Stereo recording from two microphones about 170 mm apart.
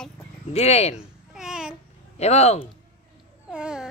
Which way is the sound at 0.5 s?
40° left (ahead or behind).